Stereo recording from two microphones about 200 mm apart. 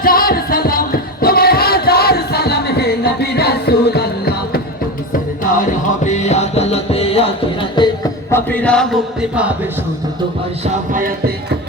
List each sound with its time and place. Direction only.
0.0 s music: 45° left (ahead or behind)
5.1 s music: 45° left (ahead or behind); by 7.9 s 25° left (ahead or behind)
8.3 s speech: 10° left (ahead or behind)